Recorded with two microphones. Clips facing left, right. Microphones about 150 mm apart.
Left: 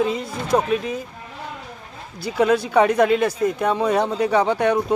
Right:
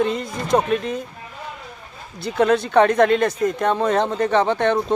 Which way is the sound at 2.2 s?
5° left (ahead or behind).